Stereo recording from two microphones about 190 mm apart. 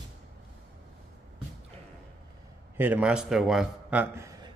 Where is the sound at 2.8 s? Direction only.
5° right (ahead or behind).